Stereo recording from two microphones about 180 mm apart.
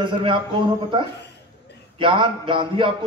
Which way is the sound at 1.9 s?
25° right (ahead or behind).